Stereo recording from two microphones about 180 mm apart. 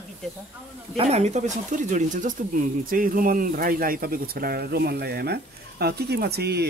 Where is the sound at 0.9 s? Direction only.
35° right (ahead or behind).